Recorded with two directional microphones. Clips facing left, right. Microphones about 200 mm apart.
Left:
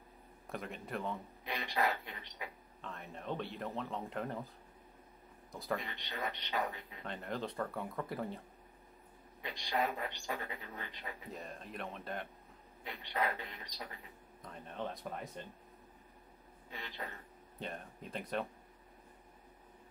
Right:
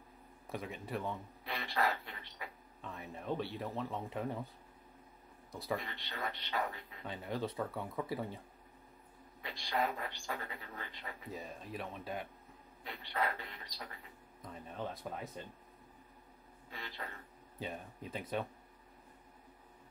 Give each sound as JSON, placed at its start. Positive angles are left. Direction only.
{"t": 0.5, "sound": "speech", "side_deg": 0}
{"t": 1.4, "sound": "a sound", "side_deg": 15}
{"t": 2.8, "sound": "speech", "side_deg": -5}
{"t": 5.5, "sound": "speech", "side_deg": 0}
{"t": 5.8, "sound": "a woman's voice", "side_deg": 20}
{"t": 7.1, "sound": "speech", "side_deg": -5}
{"t": 9.4, "sound": "a woman's voice", "side_deg": 20}
{"t": 11.3, "sound": "speech", "side_deg": 0}
{"t": 12.8, "sound": "a woman's voice", "side_deg": 20}
{"t": 14.4, "sound": "speech", "side_deg": -5}
{"t": 16.7, "sound": "a woman's voice", "side_deg": 20}
{"t": 17.6, "sound": "speech", "side_deg": 0}